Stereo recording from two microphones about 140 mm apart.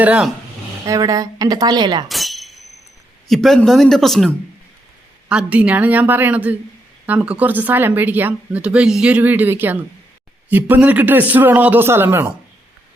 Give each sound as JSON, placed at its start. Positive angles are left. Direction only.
{"t": 0.0, "sound": "a woman's voice", "side_deg": -10}
{"t": 0.9, "sound": "a woman's voice", "side_deg": -25}
{"t": 2.0, "sound": "a sound", "side_deg": 0}
{"t": 3.2, "sound": "speech", "side_deg": 0}
{"t": 5.3, "sound": "a woman's voice", "side_deg": -10}